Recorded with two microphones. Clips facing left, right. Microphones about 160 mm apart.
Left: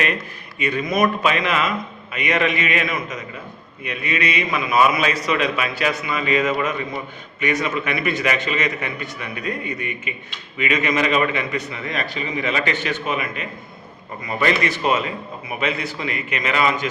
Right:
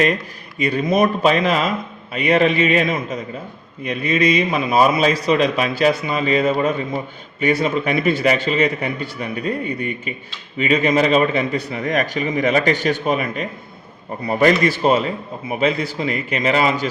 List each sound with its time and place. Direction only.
0.6 s a man's voice: 35° right (ahead or behind)